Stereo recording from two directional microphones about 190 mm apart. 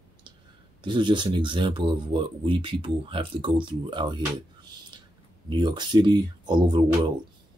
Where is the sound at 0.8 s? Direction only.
25° right (ahead or behind).